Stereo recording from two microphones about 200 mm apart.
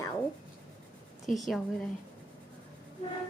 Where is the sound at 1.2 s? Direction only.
Centre (ahead or behind).